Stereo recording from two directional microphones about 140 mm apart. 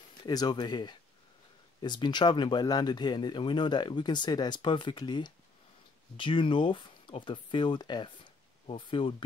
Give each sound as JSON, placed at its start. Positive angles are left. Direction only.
{"t": 0.2, "sound": "speech", "side_deg": 30}